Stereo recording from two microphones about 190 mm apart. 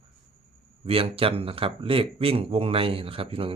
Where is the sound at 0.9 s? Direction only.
30° right (ahead or behind).